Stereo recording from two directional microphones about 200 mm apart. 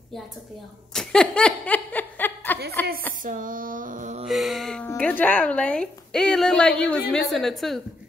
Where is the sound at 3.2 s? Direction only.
45° right (ahead or behind).